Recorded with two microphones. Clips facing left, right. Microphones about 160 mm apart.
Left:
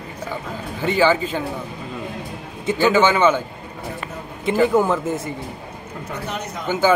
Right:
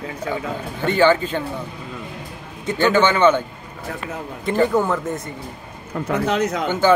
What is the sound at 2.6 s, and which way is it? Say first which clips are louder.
Speech: left 1 dB; 5° left (ahead or behind).